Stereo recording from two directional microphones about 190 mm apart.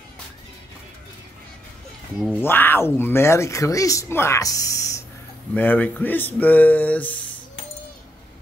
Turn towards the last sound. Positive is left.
turn(degrees=10)  # may be behind; listen again after turning